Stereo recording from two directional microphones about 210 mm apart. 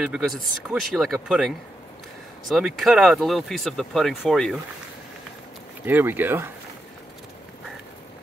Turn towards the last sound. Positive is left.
turn(degrees=-10)  # may be behind; listen again after turning